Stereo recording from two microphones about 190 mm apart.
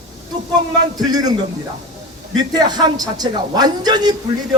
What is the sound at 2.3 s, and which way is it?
A man's voice, 20° right (ahead or behind).